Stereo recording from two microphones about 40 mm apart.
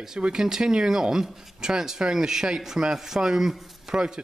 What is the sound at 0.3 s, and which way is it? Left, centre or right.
A man's voice, centre.